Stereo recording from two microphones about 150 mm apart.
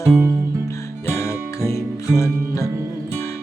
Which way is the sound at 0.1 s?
15° right (ahead or behind).